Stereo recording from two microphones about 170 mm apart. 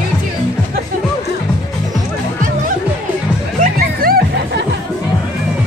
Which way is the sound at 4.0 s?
60° right (ahead or behind).